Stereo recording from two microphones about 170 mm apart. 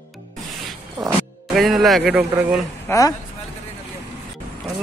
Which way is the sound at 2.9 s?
15° left (ahead or behind).